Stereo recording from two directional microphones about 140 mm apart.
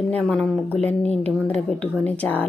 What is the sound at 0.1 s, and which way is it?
Speech, 10° left (ahead or behind).